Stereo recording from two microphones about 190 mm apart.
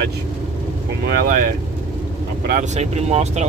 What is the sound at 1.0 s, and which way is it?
Speech, 50° right (ahead or behind).